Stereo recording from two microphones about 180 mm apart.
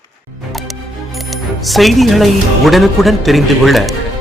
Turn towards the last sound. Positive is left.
turn(degrees=0)  # may be behind; listen again after turning